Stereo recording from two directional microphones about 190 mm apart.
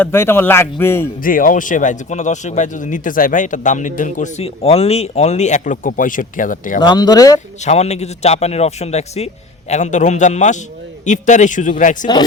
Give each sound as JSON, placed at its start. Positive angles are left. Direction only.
{"t": 0.0, "sound": "a man's voice", "side_deg": 10}
{"t": 1.2, "sound": "speech", "side_deg": 45}
{"t": 6.8, "sound": "speech", "side_deg": 20}
{"t": 7.6, "sound": "speech", "side_deg": 35}
{"t": 12.1, "sound": "speech", "side_deg": 25}